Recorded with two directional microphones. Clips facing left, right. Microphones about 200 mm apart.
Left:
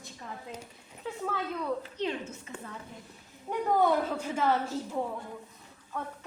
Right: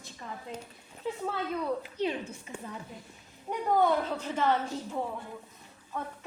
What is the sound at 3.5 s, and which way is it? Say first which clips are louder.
A woman's voice: even; 5° left (ahead or behind).